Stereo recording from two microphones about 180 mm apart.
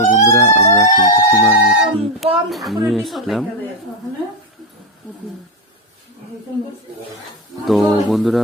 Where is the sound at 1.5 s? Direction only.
10° right (ahead or behind).